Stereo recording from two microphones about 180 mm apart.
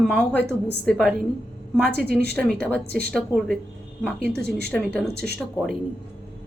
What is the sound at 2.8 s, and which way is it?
Speech, 60° right (ahead or behind).